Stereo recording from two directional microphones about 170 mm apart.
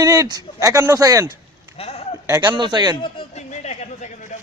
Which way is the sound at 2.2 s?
20° right (ahead or behind).